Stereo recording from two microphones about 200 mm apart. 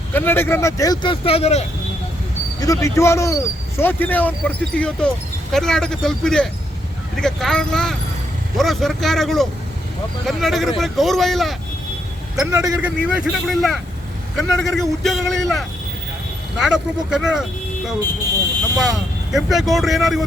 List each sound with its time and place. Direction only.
0.1 s speech: 10° left (ahead or behind); by 1.6 s 30° left (ahead or behind)
2.6 s speech: 15° left (ahead or behind); by 11.5 s centre (ahead or behind)
12.4 s a man's voice: 15° right (ahead or behind)
13.1 s speech: centre (ahead or behind)
18.8 s speech: centre (ahead or behind)